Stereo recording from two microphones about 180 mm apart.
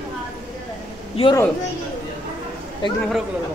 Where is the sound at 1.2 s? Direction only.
35° left (ahead or behind).